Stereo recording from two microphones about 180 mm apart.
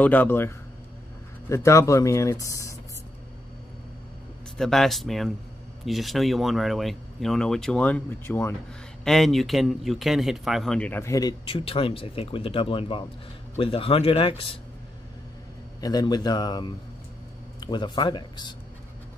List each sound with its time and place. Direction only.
0.0 s a man's voice: 10° left (ahead or behind)
1.5 s a man's voice: 15° left (ahead or behind)
4.6 s speech: centre (ahead or behind)
9.0 s a man's voice: centre (ahead or behind); by 14.6 s 30° left (ahead or behind)
15.8 s speech: 20° left (ahead or behind)